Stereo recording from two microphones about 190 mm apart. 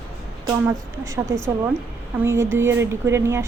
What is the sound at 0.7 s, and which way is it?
Speech, 15° right (ahead or behind).